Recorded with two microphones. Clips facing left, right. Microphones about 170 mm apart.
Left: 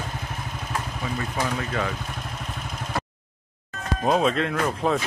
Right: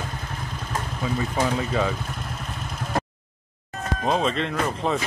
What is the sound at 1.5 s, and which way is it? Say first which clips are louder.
Speech: right 3 dB; 10° right (ahead or behind).